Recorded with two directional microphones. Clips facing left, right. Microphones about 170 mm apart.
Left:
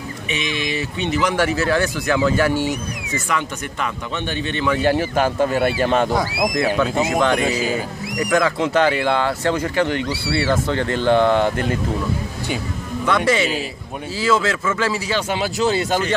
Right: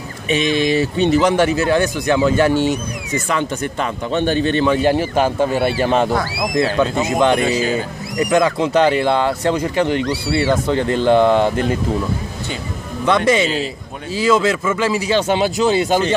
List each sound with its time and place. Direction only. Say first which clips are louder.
0.3 s speech: right 9 dB; 35° right (ahead or behind)
1.3 s a man's voice: right 4 dB; 20° right (ahead or behind)
4.8 s speech: right 2 dB; 15° right (ahead or behind)
6.1 s speech: even; 20° left (ahead or behind)
7.1 s a man's voice: right 3 dB; 20° right (ahead or behind)
7.3 s speech: right 3 dB; 10° left (ahead or behind)
7.7 s speech: right 3 dB; 20° right (ahead or behind)
13.0 s a man's voice: right 3 dB; 20° right (ahead or behind)